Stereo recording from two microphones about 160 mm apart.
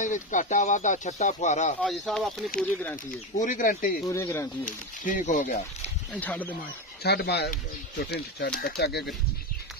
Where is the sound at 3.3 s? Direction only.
50° left (ahead or behind).